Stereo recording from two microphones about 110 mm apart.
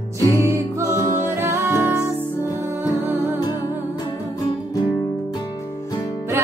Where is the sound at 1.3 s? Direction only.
20° right (ahead or behind).